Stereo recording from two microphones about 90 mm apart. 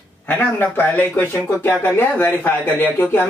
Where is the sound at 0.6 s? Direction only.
20° left (ahead or behind).